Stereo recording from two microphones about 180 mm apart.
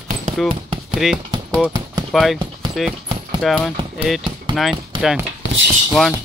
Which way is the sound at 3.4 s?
5° left (ahead or behind).